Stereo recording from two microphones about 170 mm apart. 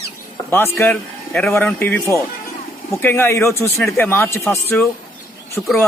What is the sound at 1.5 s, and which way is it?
A man's voice, 10° left (ahead or behind).